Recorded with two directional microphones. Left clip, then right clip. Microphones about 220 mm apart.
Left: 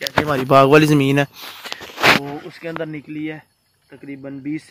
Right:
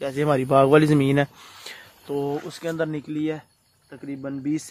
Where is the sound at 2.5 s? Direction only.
15° right (ahead or behind).